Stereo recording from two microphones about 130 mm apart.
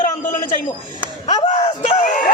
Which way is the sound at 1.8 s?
70° left (ahead or behind).